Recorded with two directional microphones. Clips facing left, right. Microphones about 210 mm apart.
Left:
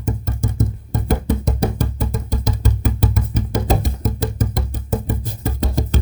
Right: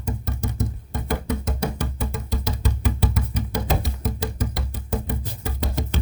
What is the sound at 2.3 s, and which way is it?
Music, 45° left (ahead or behind).